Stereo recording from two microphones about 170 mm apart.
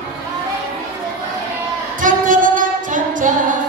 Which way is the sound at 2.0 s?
50° right (ahead or behind).